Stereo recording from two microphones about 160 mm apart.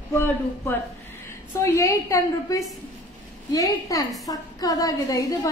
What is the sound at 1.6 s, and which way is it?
A woman's voice, 20° left (ahead or behind).